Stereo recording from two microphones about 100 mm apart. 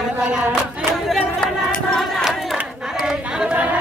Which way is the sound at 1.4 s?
5° left (ahead or behind).